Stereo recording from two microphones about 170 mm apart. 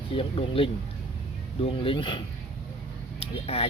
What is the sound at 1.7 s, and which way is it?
Speech, 30° left (ahead or behind).